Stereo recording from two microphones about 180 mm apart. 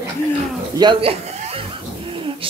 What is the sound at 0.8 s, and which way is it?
Speech, 30° right (ahead or behind).